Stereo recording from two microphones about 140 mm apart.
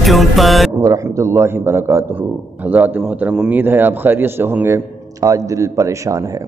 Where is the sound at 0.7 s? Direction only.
20° right (ahead or behind).